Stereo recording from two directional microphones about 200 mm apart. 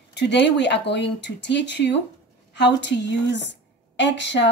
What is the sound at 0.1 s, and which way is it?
A woman's voice, 60° left (ahead or behind).